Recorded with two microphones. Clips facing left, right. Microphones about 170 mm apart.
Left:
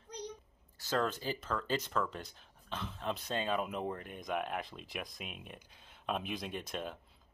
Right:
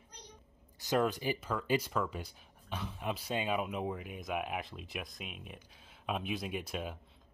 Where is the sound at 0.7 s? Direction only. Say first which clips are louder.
Right 3 dB; 15° right (ahead or behind).